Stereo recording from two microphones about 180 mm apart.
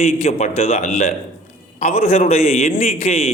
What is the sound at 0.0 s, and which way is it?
A man's voice, 35° left (ahead or behind).